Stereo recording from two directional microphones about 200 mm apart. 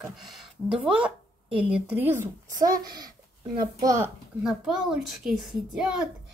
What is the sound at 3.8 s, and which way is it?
Speech, 15° right (ahead or behind).